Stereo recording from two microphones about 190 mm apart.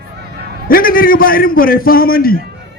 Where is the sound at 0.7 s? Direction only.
50° left (ahead or behind).